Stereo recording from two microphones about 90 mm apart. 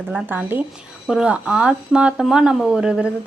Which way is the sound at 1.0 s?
5° right (ahead or behind).